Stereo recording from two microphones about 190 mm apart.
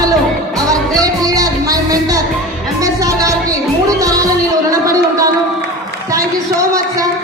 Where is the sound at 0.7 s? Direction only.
20° right (ahead or behind).